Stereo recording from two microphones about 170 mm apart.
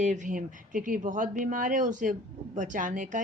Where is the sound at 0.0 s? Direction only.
50° right (ahead or behind).